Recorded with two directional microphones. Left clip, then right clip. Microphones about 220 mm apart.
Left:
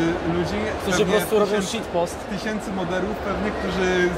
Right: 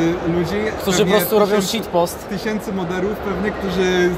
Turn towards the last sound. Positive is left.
turn(degrees=-25)  # may be behind; listen again after turning